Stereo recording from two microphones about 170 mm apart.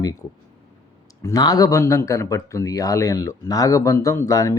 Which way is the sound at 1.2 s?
20° left (ahead or behind).